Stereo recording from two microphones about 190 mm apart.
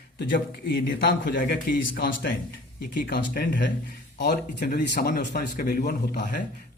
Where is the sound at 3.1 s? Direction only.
55° left (ahead or behind).